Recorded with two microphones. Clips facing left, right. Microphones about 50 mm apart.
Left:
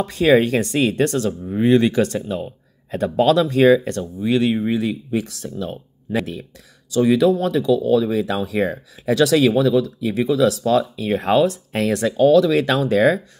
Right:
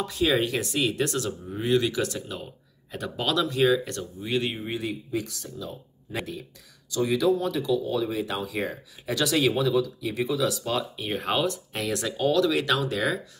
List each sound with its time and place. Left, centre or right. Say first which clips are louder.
0.0 s speech: left 9 dB; left
4.3 s speech: left 10 dB; left
12.0 s speech: left 10 dB; left